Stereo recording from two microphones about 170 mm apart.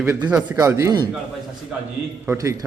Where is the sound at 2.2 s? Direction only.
20° right (ahead or behind).